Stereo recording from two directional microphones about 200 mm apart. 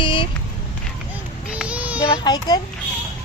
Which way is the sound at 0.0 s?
25° left (ahead or behind).